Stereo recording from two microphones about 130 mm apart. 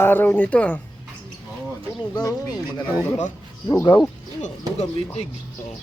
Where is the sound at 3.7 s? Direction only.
30° left (ahead or behind).